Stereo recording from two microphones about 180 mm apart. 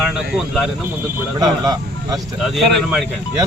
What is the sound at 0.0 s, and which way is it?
Speech, centre (ahead or behind).